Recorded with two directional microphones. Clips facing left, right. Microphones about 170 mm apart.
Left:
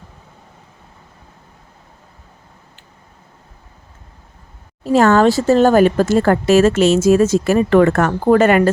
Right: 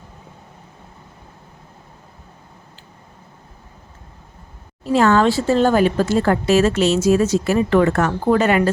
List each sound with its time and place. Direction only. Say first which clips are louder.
4.8 s speech: left 3 dB; 45° left (ahead or behind)